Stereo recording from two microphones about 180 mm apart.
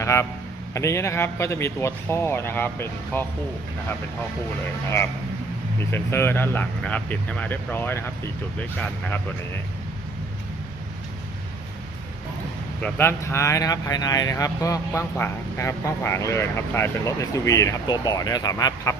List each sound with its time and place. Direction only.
0.0 s a man's voice: 15° left (ahead or behind)
5.8 s speech: 15° left (ahead or behind)
12.8 s speech: 10° left (ahead or behind)